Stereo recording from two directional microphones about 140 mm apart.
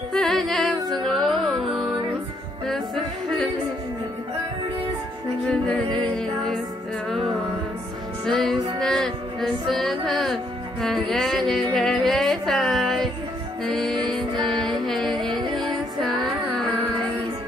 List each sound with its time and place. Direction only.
0.1 s music: centre (ahead or behind)
8.3 s music: centre (ahead or behind)
8.5 s music: 30° right (ahead or behind)
8.8 s music: 5° left (ahead or behind)
15.1 s music: 35° right (ahead or behind)
15.5 s music: centre (ahead or behind)